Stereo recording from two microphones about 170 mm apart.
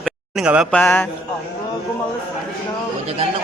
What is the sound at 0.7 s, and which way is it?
Speech, 10° left (ahead or behind).